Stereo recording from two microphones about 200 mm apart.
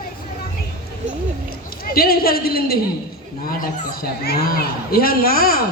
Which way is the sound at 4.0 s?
50° left (ahead or behind).